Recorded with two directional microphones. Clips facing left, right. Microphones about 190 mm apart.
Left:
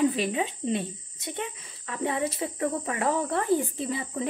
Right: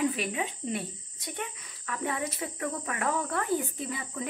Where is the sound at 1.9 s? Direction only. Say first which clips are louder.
Left 4 dB; 25° left (ahead or behind).